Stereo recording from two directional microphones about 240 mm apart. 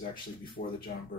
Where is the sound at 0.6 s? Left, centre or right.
Left.